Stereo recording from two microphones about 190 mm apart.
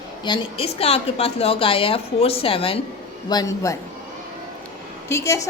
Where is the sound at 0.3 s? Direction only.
30° left (ahead or behind).